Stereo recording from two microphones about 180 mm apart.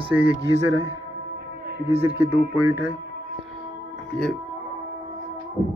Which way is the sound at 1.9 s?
10° right (ahead or behind).